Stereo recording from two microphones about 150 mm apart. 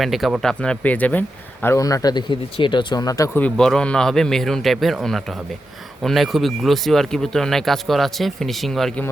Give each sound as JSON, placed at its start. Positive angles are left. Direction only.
{"t": 0.0, "sound": "a man's voice", "side_deg": 0}
{"t": 3.3, "sound": "speech", "side_deg": 5}